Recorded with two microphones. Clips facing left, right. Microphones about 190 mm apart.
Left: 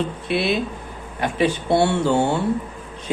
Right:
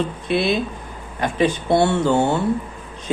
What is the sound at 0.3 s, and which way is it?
Speech, 5° left (ahead or behind).